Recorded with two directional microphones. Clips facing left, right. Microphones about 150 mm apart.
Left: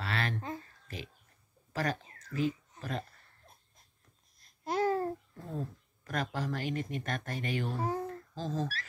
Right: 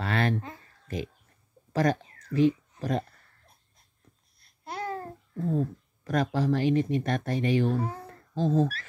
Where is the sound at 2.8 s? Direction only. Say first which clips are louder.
Right 9 dB; 40° right (ahead or behind).